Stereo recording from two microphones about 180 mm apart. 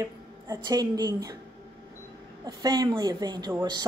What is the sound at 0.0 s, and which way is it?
Speech, 20° right (ahead or behind).